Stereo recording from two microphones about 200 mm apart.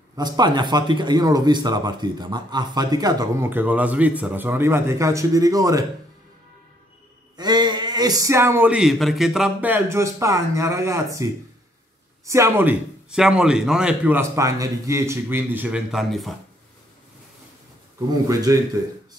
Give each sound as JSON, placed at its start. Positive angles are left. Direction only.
{"t": 0.1, "sound": "speech", "side_deg": -20}
{"t": 7.3, "sound": "speech", "side_deg": -20}
{"t": 12.3, "sound": "speech", "side_deg": -15}
{"t": 18.3, "sound": "speech", "side_deg": -20}